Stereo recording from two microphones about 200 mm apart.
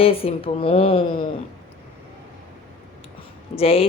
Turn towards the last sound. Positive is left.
turn(degrees=30)  # may be behind; listen again after turning